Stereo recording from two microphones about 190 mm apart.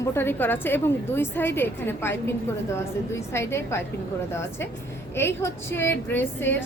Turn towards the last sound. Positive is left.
turn(degrees=10)  # may be behind; listen again after turning